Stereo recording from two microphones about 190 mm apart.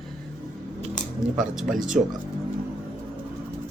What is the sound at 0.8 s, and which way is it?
Dishes, 45° right (ahead or behind).